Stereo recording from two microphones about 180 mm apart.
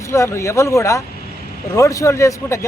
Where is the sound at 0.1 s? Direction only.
15° left (ahead or behind).